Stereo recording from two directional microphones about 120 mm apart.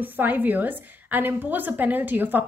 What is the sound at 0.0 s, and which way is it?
A woman's voice, 15° right (ahead or behind).